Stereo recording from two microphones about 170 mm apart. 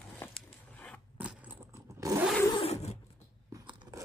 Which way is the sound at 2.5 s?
35° left (ahead or behind).